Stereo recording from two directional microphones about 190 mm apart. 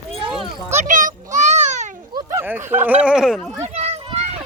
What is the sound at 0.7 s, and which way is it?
Children playing, 40° right (ahead or behind).